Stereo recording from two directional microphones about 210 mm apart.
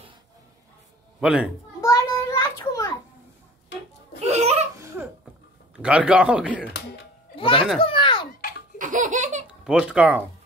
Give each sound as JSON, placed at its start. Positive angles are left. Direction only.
{"t": 1.2, "sound": "a man's voice", "side_deg": -5}
{"t": 1.8, "sound": "a sound", "side_deg": 15}
{"t": 4.2, "sound": "laughter", "side_deg": -30}
{"t": 4.7, "sound": "laughter", "side_deg": -15}
{"t": 5.8, "sound": "a man's voice", "side_deg": -5}
{"t": 7.3, "sound": "a child's voice", "side_deg": 25}
{"t": 7.8, "sound": "a sound", "side_deg": 25}
{"t": 8.7, "sound": "laughter", "side_deg": -35}
{"t": 9.7, "sound": "a man's voice", "side_deg": -5}